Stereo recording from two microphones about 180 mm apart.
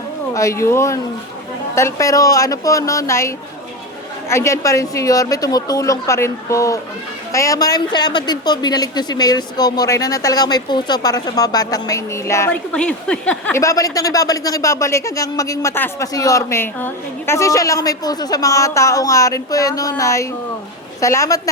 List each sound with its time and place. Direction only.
0.3 s speech: 15° left (ahead or behind)